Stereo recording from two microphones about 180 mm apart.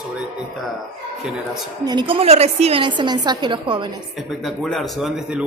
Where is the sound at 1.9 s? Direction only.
25° right (ahead or behind).